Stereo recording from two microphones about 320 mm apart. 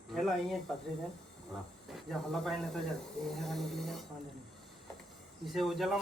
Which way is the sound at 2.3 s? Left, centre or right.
Centre.